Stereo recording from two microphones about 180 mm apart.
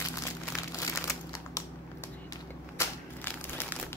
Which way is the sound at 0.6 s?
20° left (ahead or behind).